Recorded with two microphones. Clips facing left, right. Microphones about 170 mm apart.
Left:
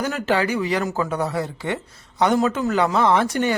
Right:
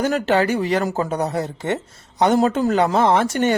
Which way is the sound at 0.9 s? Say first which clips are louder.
Right 2 dB; 25° right (ahead or behind).